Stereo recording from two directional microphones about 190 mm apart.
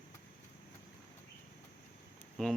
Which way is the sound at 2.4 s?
5° left (ahead or behind).